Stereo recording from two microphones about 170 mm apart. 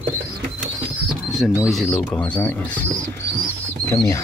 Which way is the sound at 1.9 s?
10° left (ahead or behind).